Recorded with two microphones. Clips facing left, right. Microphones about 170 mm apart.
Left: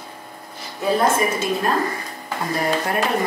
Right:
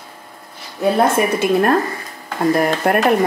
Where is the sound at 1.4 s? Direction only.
60° right (ahead or behind).